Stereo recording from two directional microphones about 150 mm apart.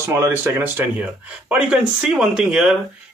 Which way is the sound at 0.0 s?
15° right (ahead or behind).